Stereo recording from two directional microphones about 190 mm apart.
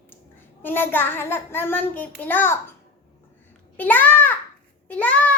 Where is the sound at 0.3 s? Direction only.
10° left (ahead or behind).